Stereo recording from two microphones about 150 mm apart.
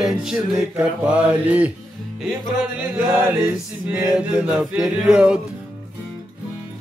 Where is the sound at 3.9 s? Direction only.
5° right (ahead or behind).